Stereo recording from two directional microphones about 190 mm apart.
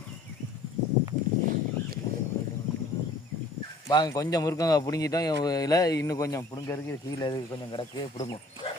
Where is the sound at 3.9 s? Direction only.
20° left (ahead or behind).